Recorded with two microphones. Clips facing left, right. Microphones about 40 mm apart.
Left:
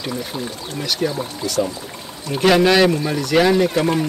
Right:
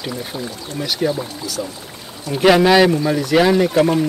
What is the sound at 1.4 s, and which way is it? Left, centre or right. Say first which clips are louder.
Speech: left 5 dB; left.